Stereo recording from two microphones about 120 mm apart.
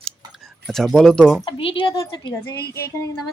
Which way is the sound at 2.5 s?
20° left (ahead or behind).